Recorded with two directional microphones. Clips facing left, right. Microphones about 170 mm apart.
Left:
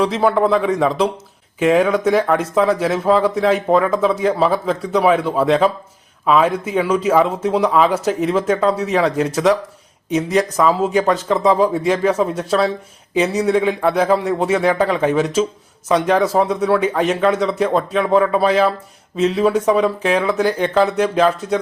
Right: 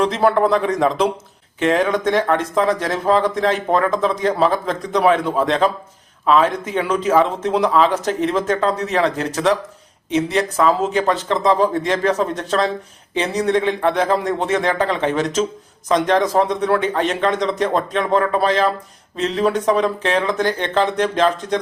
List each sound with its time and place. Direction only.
0.0 s speech: centre (ahead or behind)
10.1 s speech: 30° right (ahead or behind)
10.6 s speech: 10° left (ahead or behind)